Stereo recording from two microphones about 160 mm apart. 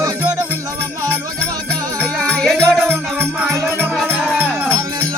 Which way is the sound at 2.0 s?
5° left (ahead or behind).